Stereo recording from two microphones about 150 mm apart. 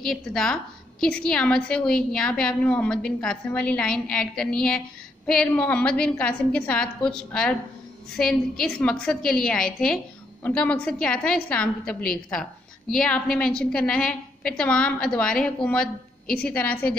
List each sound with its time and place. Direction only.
0.0 s a woman's voice: 5° left (ahead or behind)